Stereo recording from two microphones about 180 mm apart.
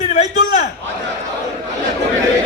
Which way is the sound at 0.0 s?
35° left (ahead or behind).